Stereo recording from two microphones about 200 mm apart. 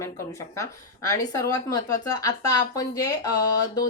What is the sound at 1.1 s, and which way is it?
Speech, 15° left (ahead or behind).